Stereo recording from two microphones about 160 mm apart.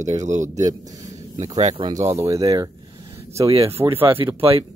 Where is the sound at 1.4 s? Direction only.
45° right (ahead or behind).